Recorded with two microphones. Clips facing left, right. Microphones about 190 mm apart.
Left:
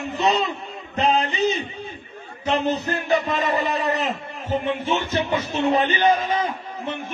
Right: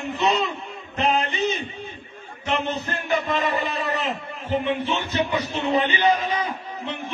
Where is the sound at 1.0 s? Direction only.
40° left (ahead or behind).